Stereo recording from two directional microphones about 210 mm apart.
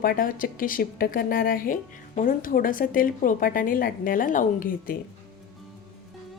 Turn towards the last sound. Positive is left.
turn(degrees=45)  # may be behind; listen again after turning